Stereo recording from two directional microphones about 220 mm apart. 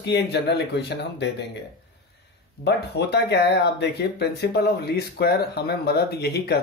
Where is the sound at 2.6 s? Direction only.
50° left (ahead or behind).